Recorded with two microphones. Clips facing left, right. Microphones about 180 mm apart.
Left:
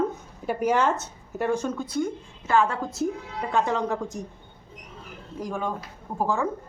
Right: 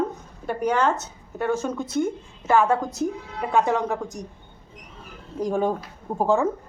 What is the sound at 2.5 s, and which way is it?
Speech, 15° right (ahead or behind).